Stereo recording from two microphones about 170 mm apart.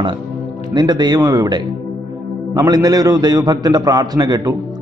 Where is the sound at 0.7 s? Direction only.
25° right (ahead or behind).